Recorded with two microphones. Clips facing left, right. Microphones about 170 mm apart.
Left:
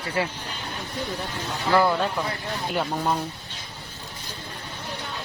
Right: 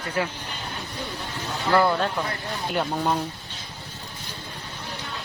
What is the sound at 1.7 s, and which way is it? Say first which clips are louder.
Speech: even; centre (ahead or behind).